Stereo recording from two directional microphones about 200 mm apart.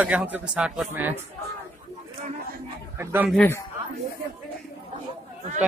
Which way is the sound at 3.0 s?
10° right (ahead or behind).